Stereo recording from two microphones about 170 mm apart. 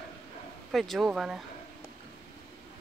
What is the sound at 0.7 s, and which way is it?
Speech, centre (ahead or behind).